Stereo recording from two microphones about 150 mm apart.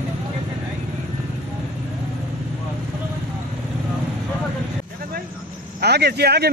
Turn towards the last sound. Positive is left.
turn(degrees=-90)